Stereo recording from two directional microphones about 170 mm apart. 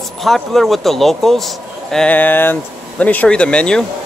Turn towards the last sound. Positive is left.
turn(degrees=5)  # may be behind; listen again after turning